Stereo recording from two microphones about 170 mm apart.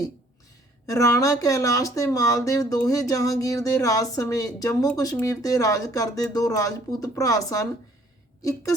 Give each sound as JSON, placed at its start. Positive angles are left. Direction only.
{"t": 0.9, "sound": "speech", "side_deg": 20}